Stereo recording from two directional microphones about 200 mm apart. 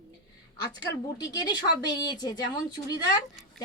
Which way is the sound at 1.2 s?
20° left (ahead or behind).